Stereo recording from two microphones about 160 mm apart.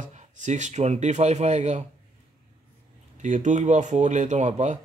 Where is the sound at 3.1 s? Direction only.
50° right (ahead or behind).